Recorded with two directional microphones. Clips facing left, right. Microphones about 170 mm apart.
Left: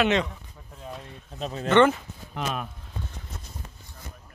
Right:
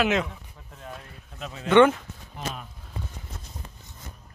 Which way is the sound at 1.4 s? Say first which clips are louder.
Left 6 dB; 35° left (ahead or behind).